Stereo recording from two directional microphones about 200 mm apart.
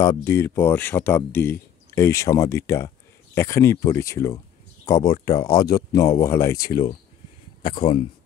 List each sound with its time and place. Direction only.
0.0 s speech: 15° left (ahead or behind)